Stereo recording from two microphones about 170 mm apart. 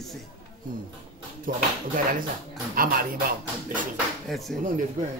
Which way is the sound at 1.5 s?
55° right (ahead or behind).